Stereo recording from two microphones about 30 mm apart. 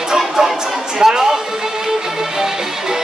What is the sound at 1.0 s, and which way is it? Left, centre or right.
Speech, centre.